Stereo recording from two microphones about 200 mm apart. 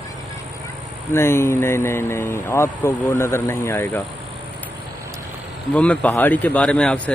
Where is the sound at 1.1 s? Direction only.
10° left (ahead or behind).